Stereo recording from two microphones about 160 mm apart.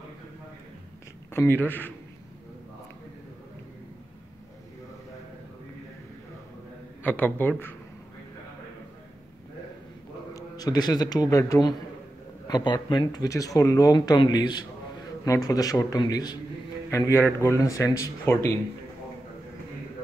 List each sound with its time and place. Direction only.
1.3 s speech: 15° left (ahead or behind)
7.0 s speech: 10° left (ahead or behind)
10.3 s a man's voice: 25° left (ahead or behind)